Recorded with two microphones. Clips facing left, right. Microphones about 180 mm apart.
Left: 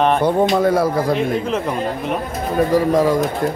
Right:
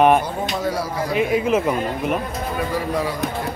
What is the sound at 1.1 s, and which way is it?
Speech, 5° right (ahead or behind).